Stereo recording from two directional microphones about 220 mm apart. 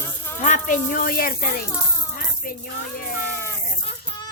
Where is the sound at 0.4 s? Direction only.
35° left (ahead or behind).